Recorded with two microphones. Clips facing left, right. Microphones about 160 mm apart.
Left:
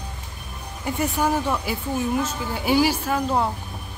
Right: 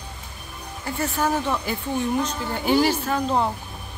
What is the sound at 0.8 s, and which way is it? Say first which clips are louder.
Speech: left 2 dB; 15° left (ahead or behind).